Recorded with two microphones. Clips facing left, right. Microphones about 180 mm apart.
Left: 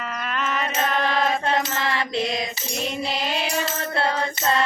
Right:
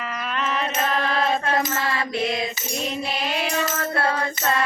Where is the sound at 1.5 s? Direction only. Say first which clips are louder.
Right 1 dB; 25° left (ahead or behind).